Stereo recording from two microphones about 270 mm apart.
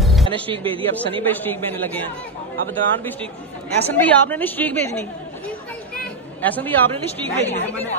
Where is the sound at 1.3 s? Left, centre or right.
Centre.